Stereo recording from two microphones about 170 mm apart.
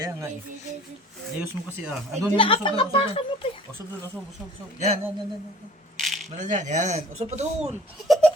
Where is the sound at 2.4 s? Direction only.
30° left (ahead or behind).